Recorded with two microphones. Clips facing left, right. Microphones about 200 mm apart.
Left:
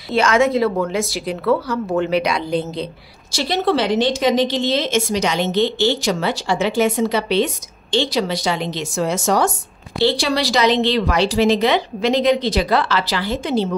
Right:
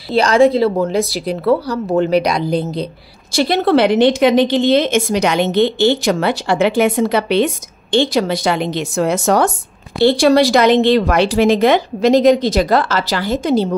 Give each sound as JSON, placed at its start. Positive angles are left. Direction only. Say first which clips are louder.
{"t": 0.1, "sound": "a woman's voice", "louder": "right 4 dB", "side_deg": -35}
{"t": 3.3, "sound": "a woman's voice", "louder": "right 5 dB", "side_deg": -55}